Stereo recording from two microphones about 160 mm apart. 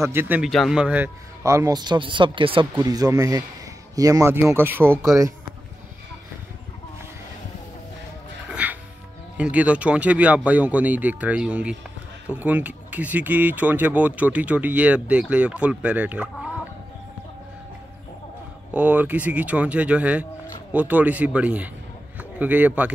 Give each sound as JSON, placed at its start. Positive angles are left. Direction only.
{"t": 0.0, "sound": "speech", "side_deg": -15}
{"t": 0.5, "sound": "a man's voice", "side_deg": 0}
{"t": 2.8, "sound": "a man's voice", "side_deg": -20}
{"t": 8.5, "sound": "music", "side_deg": -10}
{"t": 9.4, "sound": "speech", "side_deg": -10}
{"t": 18.7, "sound": "speech", "side_deg": -10}